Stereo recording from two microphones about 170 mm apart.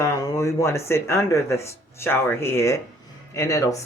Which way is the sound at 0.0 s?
15° left (ahead or behind).